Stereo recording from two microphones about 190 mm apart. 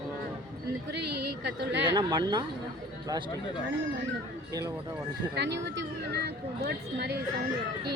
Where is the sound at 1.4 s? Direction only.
65° right (ahead or behind).